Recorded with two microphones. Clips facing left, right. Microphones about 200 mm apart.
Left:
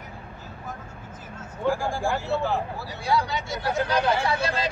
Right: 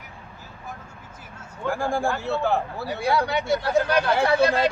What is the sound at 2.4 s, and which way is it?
Speech, 60° right (ahead or behind).